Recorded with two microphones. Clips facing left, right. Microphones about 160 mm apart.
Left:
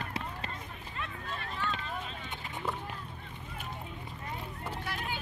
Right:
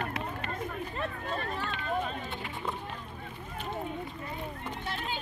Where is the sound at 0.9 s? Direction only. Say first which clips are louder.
Right 6 dB; 40° right (ahead or behind).